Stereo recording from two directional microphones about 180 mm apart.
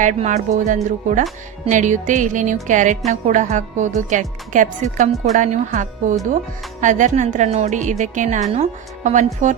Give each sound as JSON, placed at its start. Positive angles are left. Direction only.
{"t": 0.0, "sound": "a woman's voice", "side_deg": -40}